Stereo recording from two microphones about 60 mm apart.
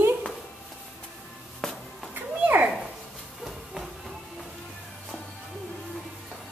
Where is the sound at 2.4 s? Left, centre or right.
Right.